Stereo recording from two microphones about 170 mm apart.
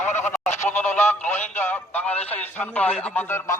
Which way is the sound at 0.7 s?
10° left (ahead or behind).